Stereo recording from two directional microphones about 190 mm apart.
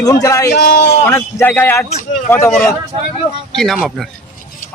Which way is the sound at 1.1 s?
10° left (ahead or behind).